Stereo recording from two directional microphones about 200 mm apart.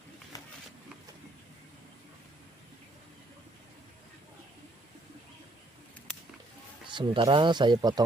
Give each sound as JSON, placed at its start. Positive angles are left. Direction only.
{"t": 6.9, "sound": "speech", "side_deg": -25}